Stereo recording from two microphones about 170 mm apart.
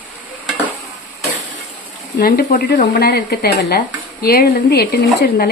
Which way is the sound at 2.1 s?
60° left (ahead or behind).